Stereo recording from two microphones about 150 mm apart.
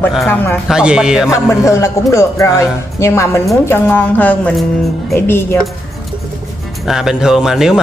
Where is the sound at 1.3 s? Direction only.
20° left (ahead or behind).